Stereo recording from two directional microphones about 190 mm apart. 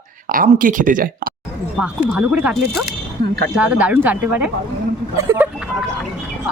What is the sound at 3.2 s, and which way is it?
Speech, 60° right (ahead or behind).